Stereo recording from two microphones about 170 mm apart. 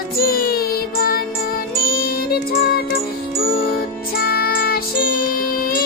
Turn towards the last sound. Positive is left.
turn(degrees=60)  # may be behind; listen again after turning